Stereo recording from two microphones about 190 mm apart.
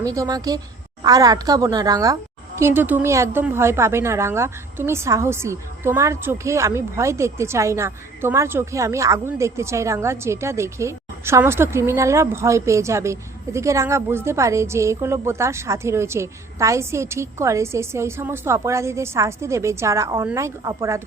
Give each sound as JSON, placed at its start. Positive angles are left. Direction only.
{"t": 0.0, "sound": "a woman's voice", "side_deg": -15}